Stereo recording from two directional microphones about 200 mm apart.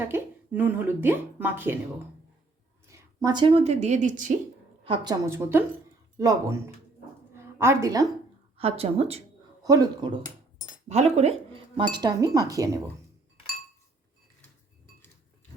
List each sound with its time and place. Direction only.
0.1 s a woman's voice: 10° right (ahead or behind)
2.8 s speech: 15° right (ahead or behind); by 4.4 s 40° right (ahead or behind)
4.8 s a woman's voice: 25° right (ahead or behind)
7.3 s a sound: 15° right (ahead or behind)
8.5 s speech: 30° right (ahead or behind)
9.6 s speech: 20° right (ahead or behind)
10.8 s speech: 35° right (ahead or behind); by 12.8 s 15° right (ahead or behind)